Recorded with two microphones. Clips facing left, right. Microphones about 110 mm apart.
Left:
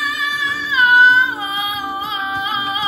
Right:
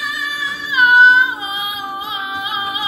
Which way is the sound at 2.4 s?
15° right (ahead or behind).